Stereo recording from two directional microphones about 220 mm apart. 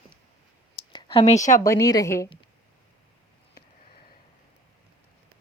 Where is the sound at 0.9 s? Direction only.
20° left (ahead or behind).